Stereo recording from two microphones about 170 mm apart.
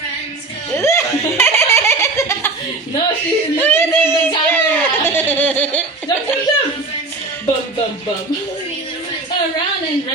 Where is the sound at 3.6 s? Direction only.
15° left (ahead or behind).